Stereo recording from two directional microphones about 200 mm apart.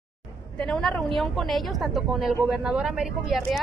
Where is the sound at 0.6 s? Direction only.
5° left (ahead or behind).